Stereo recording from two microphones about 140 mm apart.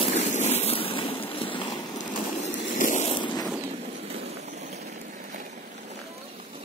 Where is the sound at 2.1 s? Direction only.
65° left (ahead or behind).